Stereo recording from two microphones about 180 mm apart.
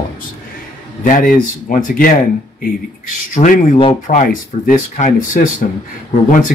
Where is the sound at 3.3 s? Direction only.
45° left (ahead or behind).